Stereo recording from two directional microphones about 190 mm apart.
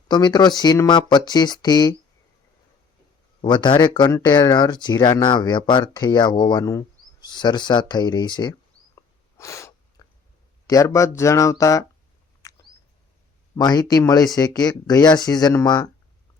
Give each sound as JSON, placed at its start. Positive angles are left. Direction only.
{"t": 0.1, "sound": "speech", "side_deg": 20}
{"t": 3.4, "sound": "speech", "side_deg": 25}
{"t": 9.0, "sound": "sneeze", "side_deg": 15}
{"t": 10.7, "sound": "speech", "side_deg": 15}
{"t": 12.4, "sound": "rodents", "side_deg": 15}
{"t": 13.6, "sound": "speech", "side_deg": 20}